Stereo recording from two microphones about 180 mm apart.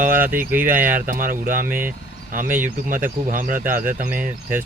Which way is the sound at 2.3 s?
50° right (ahead or behind).